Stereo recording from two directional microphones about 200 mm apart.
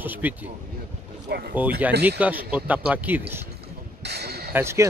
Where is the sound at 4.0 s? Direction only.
55° right (ahead or behind).